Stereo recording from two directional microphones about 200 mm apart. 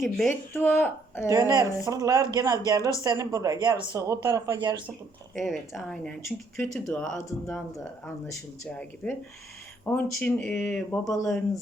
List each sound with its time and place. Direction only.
0.3 s speech: 10° left (ahead or behind)
1.3 s speech: 15° right (ahead or behind)
5.3 s speech: centre (ahead or behind)
8.6 s speech: 5° left (ahead or behind)